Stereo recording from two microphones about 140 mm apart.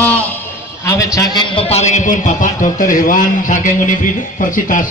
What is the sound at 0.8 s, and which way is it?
A man's voice, 25° left (ahead or behind).